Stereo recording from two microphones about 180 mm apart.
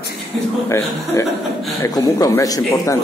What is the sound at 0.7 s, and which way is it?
A man's voice, 15° left (ahead or behind).